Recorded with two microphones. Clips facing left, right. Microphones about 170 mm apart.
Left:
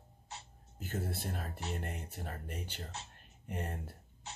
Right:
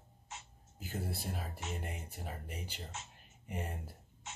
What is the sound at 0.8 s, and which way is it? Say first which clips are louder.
Speech: left 2 dB; 5° right (ahead or behind).